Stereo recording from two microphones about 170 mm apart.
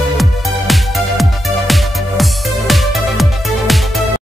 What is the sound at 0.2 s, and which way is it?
Music, centre (ahead or behind).